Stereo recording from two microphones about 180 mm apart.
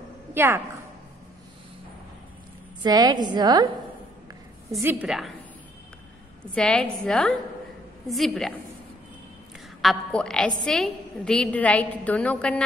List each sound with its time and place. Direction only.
0.3 s a woman's voice: 15° right (ahead or behind)
2.8 s a woman's voice: 20° right (ahead or behind)
4.6 s a woman's voice: 10° right (ahead or behind)
6.5 s a woman's voice: 5° left (ahead or behind)
9.8 s a woman's voice: centre (ahead or behind)